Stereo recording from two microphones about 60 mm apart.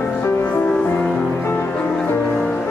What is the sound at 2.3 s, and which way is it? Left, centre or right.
Music, centre.